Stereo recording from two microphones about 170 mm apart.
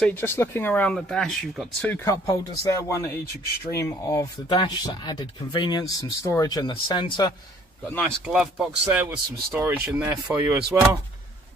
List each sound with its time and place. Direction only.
0.0 s speech: 10° left (ahead or behind)
2.6 s speech: 20° left (ahead or behind)
8.0 s speech: 5° right (ahead or behind)